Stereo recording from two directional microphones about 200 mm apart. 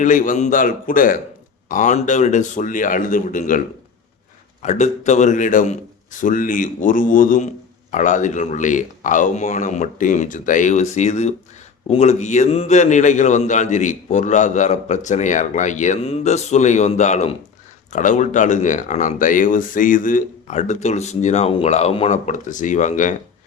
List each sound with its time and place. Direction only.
0.0 s a man's voice: 40° left (ahead or behind)
4.6 s a man's voice: 35° left (ahead or behind)